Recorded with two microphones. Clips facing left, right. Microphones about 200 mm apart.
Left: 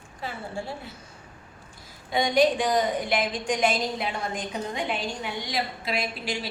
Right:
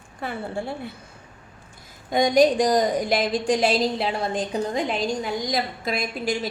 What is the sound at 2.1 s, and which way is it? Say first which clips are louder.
A woman's voice: right 4 dB; 45° right (ahead or behind).